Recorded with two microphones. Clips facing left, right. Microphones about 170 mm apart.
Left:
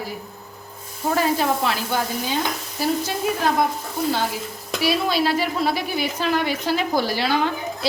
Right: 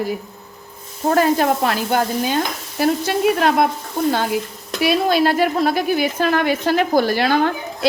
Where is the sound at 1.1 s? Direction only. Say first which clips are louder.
Right 5 dB; 50° right (ahead or behind).